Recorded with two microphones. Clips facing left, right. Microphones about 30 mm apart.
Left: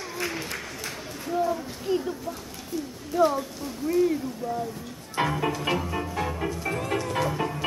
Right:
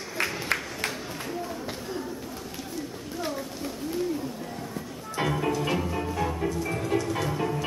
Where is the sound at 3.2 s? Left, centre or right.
Left.